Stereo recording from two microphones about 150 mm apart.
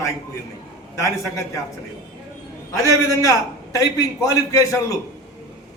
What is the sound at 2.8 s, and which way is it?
A man's voice, 20° left (ahead or behind).